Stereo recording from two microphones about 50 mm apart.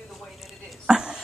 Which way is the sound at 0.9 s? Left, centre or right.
Centre.